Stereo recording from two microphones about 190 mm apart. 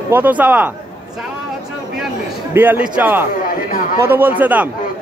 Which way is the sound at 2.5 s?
10° right (ahead or behind).